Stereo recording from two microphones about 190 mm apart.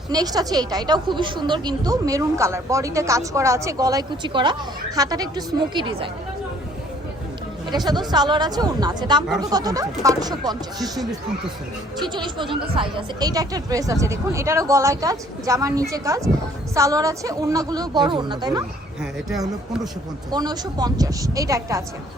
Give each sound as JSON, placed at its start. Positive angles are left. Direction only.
{"t": 0.1, "sound": "a woman's voice", "side_deg": -20}
{"t": 7.9, "sound": "a woman's voice", "side_deg": -20}
{"t": 20.3, "sound": "a woman's voice", "side_deg": -20}